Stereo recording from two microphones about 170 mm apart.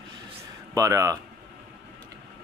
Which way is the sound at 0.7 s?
20° right (ahead or behind).